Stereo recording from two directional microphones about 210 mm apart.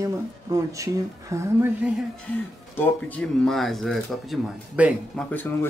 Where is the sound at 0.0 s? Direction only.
15° right (ahead or behind).